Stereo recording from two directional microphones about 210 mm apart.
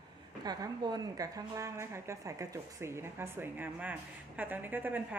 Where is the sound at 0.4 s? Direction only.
20° right (ahead or behind).